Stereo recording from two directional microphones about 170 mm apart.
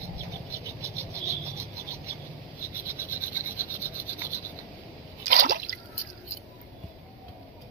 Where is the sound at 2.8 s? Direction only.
15° right (ahead or behind).